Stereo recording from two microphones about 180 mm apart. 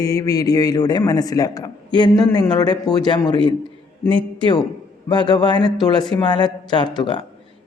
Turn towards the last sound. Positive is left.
turn(degrees=25)  # may be behind; listen again after turning